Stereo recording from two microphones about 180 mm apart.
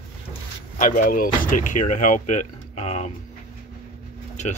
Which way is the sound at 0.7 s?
45° left (ahead or behind).